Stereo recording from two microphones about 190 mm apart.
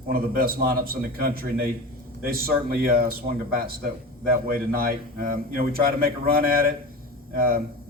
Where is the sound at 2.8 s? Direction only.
50° right (ahead or behind).